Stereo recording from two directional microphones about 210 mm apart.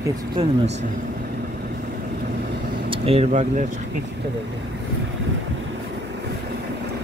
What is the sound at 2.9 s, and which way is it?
Speech, 30° right (ahead or behind).